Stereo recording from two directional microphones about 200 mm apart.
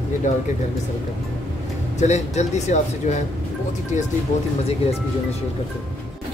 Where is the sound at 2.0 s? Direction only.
35° left (ahead or behind).